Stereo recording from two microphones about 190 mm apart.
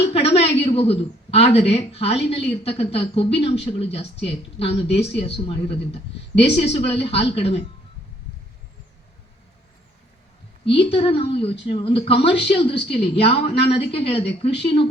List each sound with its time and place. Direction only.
0.1 s speech: 30° left (ahead or behind)
10.7 s speech: 30° left (ahead or behind)